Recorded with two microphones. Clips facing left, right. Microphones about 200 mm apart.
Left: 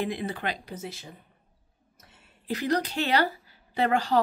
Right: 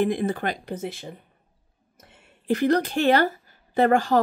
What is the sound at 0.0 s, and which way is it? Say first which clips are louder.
Speech: right 7 dB; 50° right (ahead or behind).